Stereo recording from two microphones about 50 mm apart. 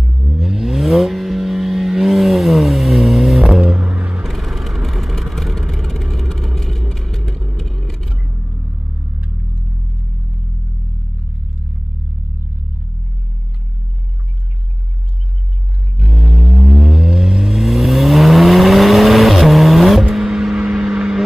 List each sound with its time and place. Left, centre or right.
0.1 s vehicle: centre
3.7 s vehicle: right
4.2 s vehicle: centre
8.3 s vehicle: right
16.0 s vehicle: centre